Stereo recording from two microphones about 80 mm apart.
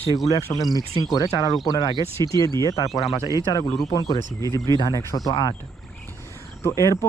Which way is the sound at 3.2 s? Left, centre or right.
Right.